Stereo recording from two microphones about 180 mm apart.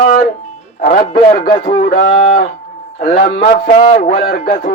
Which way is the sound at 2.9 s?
60° left (ahead or behind).